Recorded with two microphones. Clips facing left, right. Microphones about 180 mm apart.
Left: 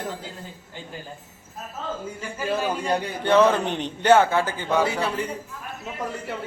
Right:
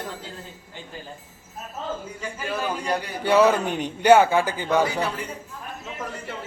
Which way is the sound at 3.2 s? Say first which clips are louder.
Even; 10° right (ahead or behind).